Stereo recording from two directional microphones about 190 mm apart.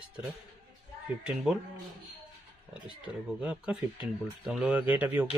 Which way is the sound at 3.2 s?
5° right (ahead or behind).